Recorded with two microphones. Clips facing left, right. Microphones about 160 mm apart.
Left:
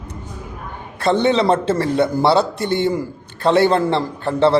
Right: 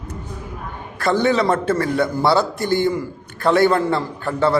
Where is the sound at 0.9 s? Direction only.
25° left (ahead or behind).